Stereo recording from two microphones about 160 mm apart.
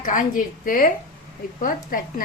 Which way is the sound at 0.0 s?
55° left (ahead or behind).